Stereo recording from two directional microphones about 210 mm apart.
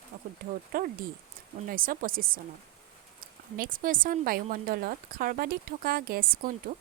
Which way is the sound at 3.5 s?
40° right (ahead or behind).